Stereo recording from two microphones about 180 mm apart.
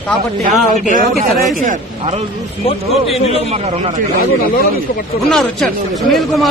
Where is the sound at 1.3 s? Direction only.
50° right (ahead or behind).